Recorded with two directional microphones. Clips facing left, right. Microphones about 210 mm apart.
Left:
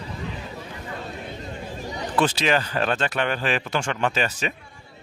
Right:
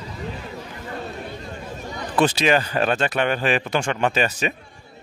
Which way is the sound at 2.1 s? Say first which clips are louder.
Right 3 dB; 15° right (ahead or behind).